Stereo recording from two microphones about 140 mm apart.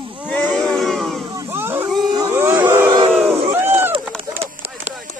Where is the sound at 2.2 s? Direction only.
20° right (ahead or behind).